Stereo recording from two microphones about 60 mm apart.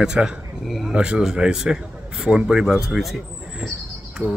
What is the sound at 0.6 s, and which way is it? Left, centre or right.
Speech, centre.